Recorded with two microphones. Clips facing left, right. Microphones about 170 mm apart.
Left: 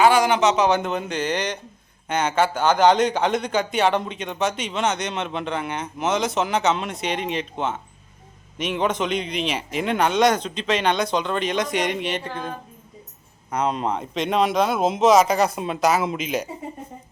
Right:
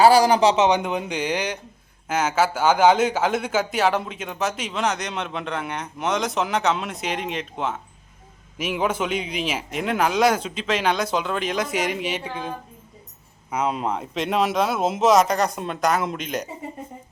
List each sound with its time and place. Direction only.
0.0 s a man's voice: 35° right (ahead or behind)
0.8 s speech: 15° right (ahead or behind); by 16.5 s 5° left (ahead or behind)